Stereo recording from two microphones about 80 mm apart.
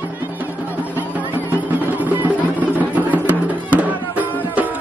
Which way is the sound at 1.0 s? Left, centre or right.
Right.